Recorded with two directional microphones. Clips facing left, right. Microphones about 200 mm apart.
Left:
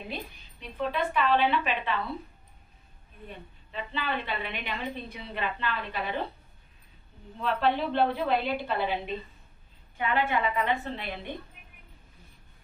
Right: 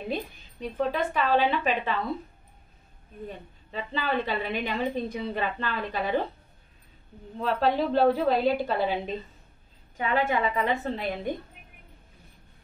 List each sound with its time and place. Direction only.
0.1 s a woman's voice: 45° right (ahead or behind)
3.7 s a woman's voice: 40° right (ahead or behind)
7.3 s a woman's voice: 40° right (ahead or behind)
9.9 s a woman's voice: 40° right (ahead or behind)